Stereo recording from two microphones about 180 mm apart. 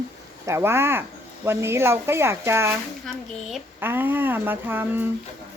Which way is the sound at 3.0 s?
Centre (ahead or behind).